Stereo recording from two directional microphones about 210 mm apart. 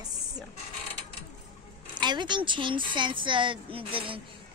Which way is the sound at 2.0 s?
20° right (ahead or behind).